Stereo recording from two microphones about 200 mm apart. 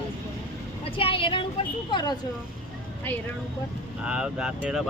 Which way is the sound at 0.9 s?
25° left (ahead or behind).